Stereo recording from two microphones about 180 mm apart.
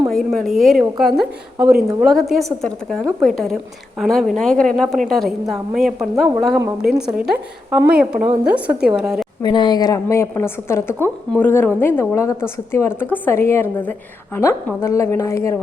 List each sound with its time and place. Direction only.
0.1 s a woman's voice: centre (ahead or behind)
9.4 s a woman's voice: 25° left (ahead or behind)